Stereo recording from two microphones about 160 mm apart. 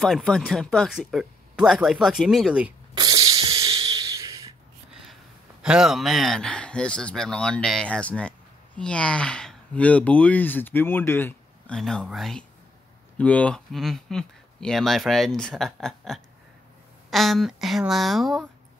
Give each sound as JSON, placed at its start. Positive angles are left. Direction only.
{"t": 0.0, "sound": "speech", "side_deg": 5}
{"t": 2.9, "sound": "a sound", "side_deg": -25}
{"t": 5.6, "sound": "speech", "side_deg": -5}